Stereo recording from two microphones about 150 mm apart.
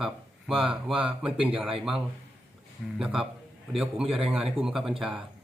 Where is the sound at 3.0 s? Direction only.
5° right (ahead or behind).